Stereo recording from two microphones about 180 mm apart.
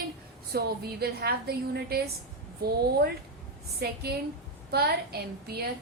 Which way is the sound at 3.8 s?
60° right (ahead or behind).